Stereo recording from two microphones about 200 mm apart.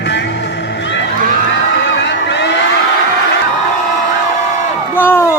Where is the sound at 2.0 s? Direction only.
60° left (ahead or behind).